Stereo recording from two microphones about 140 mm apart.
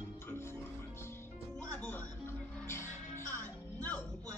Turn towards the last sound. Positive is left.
turn(degrees=10)  # may be behind; listen again after turning